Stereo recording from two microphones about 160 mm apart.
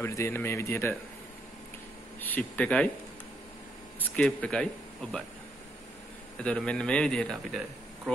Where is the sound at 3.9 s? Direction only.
10° left (ahead or behind).